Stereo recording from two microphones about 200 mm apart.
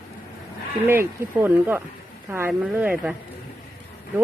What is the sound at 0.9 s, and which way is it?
Speech, 10° right (ahead or behind).